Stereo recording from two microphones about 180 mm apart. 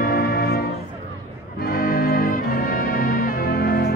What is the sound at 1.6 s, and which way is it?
Music, 55° left (ahead or behind).